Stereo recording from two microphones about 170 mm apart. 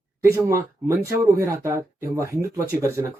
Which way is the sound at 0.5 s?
15° right (ahead or behind).